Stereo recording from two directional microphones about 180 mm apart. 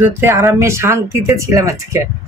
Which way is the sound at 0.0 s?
15° right (ahead or behind).